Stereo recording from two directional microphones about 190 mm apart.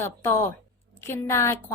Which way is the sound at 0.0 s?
15° left (ahead or behind).